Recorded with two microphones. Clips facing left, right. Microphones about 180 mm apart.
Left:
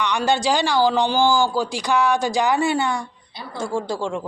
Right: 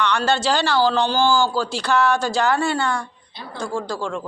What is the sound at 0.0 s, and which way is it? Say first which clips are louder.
A woman's voice: even; 15° left (ahead or behind).